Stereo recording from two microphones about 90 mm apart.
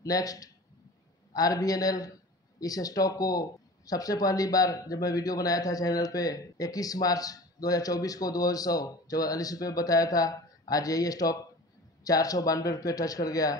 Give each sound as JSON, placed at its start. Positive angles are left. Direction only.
{"t": 0.0, "sound": "speech", "side_deg": 45}